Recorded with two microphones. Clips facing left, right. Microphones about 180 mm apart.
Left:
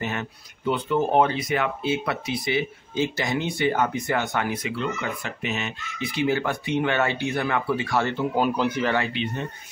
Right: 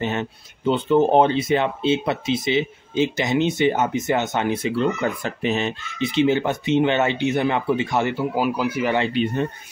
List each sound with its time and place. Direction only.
0.0 s speech: 25° right (ahead or behind); by 8.9 s 10° right (ahead or behind)